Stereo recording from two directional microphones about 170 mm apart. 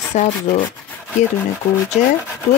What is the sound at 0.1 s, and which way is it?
Speech, 40° left (ahead or behind).